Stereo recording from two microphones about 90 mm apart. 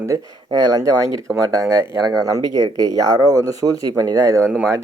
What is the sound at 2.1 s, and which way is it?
Speech, 45° right (ahead or behind).